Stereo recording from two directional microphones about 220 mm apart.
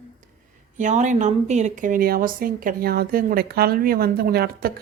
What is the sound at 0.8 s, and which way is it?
Speech, 35° right (ahead or behind).